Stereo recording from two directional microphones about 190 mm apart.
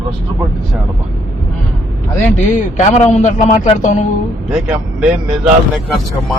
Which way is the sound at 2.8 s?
40° left (ahead or behind).